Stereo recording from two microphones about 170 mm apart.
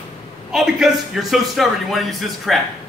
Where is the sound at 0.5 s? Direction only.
Centre (ahead or behind).